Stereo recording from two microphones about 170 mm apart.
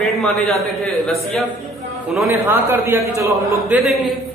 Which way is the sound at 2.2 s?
15° right (ahead or behind).